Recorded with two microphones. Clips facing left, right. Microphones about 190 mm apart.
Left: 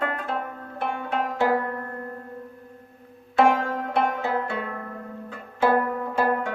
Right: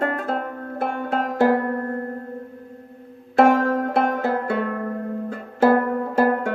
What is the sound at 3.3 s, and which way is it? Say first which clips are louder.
Music: right 4 dB; 45° right (ahead or behind).